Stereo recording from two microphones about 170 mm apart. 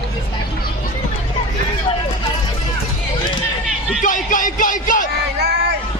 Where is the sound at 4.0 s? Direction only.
50° left (ahead or behind).